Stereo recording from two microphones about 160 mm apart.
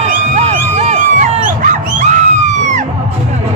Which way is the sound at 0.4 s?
45° right (ahead or behind).